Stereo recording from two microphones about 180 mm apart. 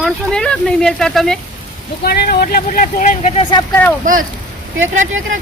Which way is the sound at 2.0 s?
60° left (ahead or behind).